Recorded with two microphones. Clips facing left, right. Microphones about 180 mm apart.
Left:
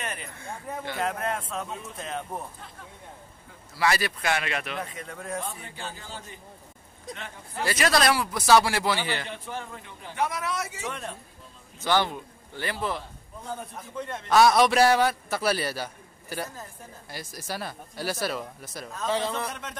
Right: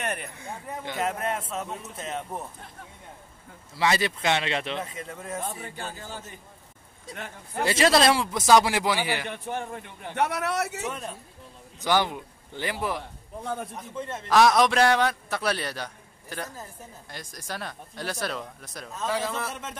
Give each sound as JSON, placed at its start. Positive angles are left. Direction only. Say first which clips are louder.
{"t": 0.0, "sound": "a man's voice", "louder": "right 4 dB", "side_deg": -60}
{"t": 0.4, "sound": "speech", "louder": "left 1 dB", "side_deg": -15}
{"t": 1.0, "sound": "a man's voice", "louder": "right 1 dB", "side_deg": -5}
{"t": 3.7, "sound": "speech", "louder": "right 1 dB", "side_deg": -20}
{"t": 5.1, "sound": "a man's voice", "louder": "left 2 dB", "side_deg": -5}
{"t": 5.8, "sound": "speech", "louder": "right 2 dB", "side_deg": -55}
{"t": 7.6, "sound": "speech", "louder": "right 3 dB", "side_deg": -25}
{"t": 9.3, "sound": "a man's voice", "louder": "right 4 dB", "side_deg": -55}
{"t": 10.9, "sound": "a man's voice", "louder": "right 1 dB", "side_deg": -5}
{"t": 13.4, "sound": "a man's voice", "louder": "right 4 dB", "side_deg": -70}
{"t": 13.7, "sound": "a man's voice", "louder": "right 1 dB", "side_deg": 0}